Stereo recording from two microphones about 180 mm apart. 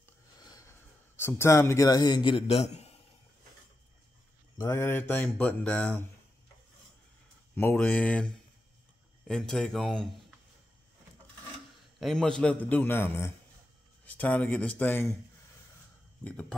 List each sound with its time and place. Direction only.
0.4 s a sound: 20° left (ahead or behind)
1.1 s a man's voice: 15° left (ahead or behind); by 3.0 s 35° left (ahead or behind)
4.6 s speech: 15° left (ahead or behind)
7.5 s speech: 10° left (ahead or behind)
9.3 s speech: 5° left (ahead or behind)
12.0 s speech: 5° left (ahead or behind)
16.3 s speech: 5° left (ahead or behind)